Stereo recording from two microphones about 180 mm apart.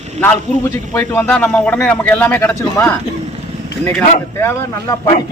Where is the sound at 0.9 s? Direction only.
15° left (ahead or behind).